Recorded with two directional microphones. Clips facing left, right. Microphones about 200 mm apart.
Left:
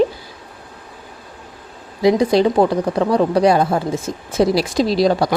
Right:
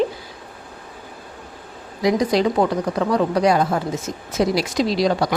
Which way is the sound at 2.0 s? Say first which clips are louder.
Left 4 dB; 30° left (ahead or behind).